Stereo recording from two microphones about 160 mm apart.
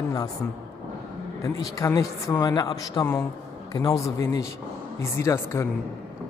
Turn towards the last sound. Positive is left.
turn(degrees=15)  # may be behind; listen again after turning